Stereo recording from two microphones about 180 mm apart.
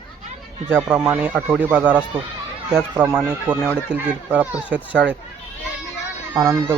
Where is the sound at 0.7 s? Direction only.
10° right (ahead or behind).